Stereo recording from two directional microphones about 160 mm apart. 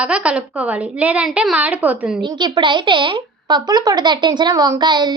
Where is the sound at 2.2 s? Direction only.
30° right (ahead or behind).